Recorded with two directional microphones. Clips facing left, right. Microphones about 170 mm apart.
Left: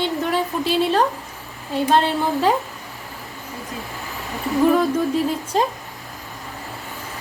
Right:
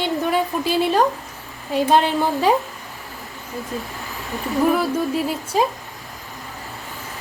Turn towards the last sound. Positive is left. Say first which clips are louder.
# left 1 dB
turn(degrees=-10)  # may be behind; listen again after turning